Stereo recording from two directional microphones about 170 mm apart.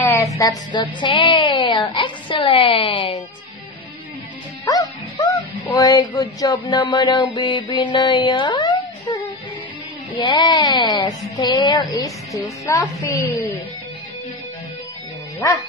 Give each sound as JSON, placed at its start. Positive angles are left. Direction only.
{"t": 0.0, "sound": "a sound", "side_deg": 15}
{"t": 0.4, "sound": "a child's voice", "side_deg": 25}
{"t": 4.6, "sound": "a child's voice", "side_deg": 20}